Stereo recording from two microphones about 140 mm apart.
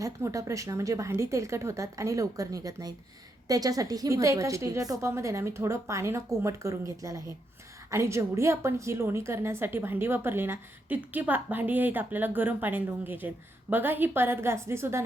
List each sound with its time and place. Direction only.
0.0 s a woman's voice: 25° right (ahead or behind)